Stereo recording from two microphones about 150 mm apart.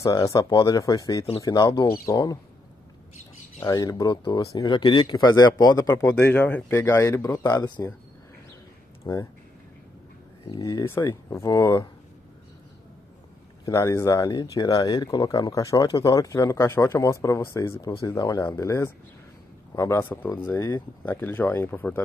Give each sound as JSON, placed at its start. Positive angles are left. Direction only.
{"t": 0.0, "sound": "speech", "side_deg": 20}
{"t": 3.5, "sound": "speech", "side_deg": 25}
{"t": 6.1, "sound": "speech", "side_deg": 10}
{"t": 9.0, "sound": "speech", "side_deg": 20}
{"t": 10.4, "sound": "speech", "side_deg": 35}
{"t": 10.7, "sound": "speech", "side_deg": 20}
{"t": 13.7, "sound": "speech", "side_deg": 20}